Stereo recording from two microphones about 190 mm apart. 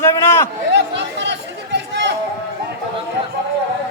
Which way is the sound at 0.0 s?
15° left (ahead or behind).